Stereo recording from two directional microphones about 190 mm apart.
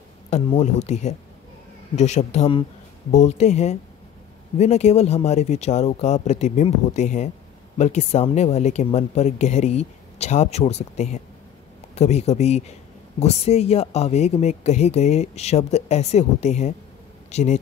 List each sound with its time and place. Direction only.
0.6 s speech: 35° left (ahead or behind)